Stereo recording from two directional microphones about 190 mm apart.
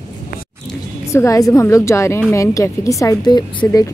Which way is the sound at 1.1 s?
15° left (ahead or behind).